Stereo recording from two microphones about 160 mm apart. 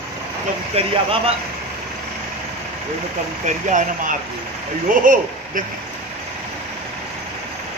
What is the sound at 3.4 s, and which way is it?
Speech, 50° right (ahead or behind).